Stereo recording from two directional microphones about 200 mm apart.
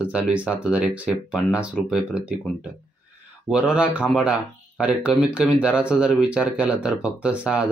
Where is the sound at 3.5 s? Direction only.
5° right (ahead or behind).